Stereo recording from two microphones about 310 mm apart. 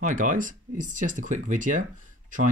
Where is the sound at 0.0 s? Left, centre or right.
Right.